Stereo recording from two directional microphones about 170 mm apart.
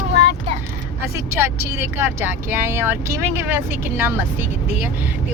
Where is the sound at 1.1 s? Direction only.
15° right (ahead or behind).